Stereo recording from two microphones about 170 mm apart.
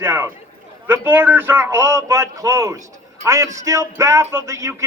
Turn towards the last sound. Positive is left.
turn(degrees=-15)  # may be behind; listen again after turning